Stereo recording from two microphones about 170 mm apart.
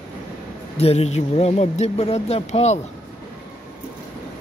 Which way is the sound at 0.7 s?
40° left (ahead or behind).